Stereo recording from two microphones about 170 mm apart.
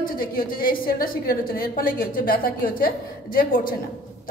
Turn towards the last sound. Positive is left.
turn(degrees=55)  # may be behind; listen again after turning